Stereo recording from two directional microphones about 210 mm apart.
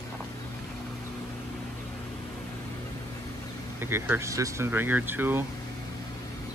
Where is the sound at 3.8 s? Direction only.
10° right (ahead or behind).